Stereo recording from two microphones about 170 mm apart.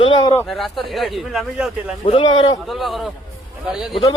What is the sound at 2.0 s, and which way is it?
Speech, 30° left (ahead or behind).